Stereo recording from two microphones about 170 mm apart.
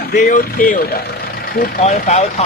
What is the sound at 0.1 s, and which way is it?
Speech, 50° left (ahead or behind).